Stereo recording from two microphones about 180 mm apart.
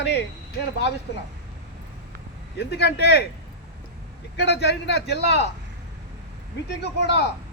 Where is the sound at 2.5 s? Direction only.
65° left (ahead or behind).